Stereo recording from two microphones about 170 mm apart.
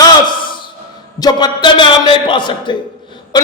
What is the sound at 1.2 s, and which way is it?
A man's voice, 25° left (ahead or behind).